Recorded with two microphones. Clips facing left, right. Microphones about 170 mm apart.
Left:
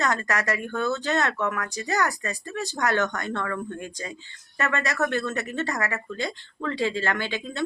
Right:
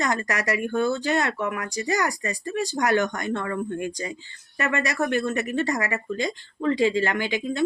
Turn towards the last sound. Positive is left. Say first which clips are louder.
# right 3 dB
turn(degrees=-15)  # may be behind; listen again after turning